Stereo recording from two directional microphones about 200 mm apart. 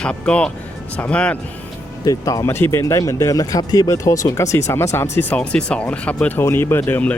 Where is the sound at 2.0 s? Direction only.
20° left (ahead or behind).